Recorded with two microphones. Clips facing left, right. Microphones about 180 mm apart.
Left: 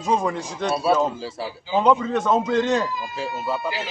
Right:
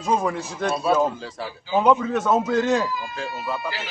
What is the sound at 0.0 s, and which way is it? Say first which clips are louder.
A man's voice: even; centre (ahead or behind).